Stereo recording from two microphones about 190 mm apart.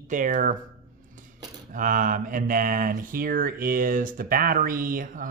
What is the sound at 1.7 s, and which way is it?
Speech, 45° right (ahead or behind).